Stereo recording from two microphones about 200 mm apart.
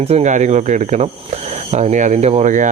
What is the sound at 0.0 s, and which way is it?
Speech, 35° right (ahead or behind).